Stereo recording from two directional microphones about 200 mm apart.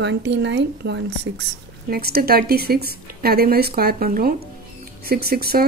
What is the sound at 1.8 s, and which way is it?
Speech, 50° right (ahead or behind).